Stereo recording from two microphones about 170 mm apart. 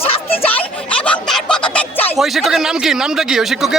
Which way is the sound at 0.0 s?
35° left (ahead or behind).